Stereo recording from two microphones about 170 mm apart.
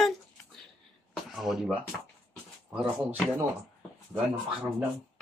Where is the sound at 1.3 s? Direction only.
Centre (ahead or behind).